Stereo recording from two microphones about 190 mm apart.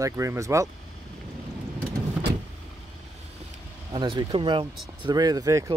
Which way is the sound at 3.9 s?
25° right (ahead or behind).